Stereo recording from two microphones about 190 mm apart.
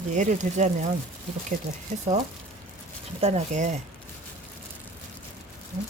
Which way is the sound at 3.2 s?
35° right (ahead or behind).